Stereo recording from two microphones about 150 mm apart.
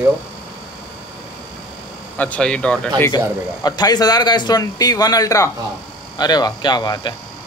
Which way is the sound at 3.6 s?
25° left (ahead or behind).